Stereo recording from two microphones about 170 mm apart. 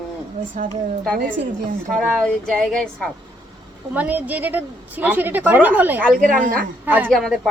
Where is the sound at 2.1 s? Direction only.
5° left (ahead or behind).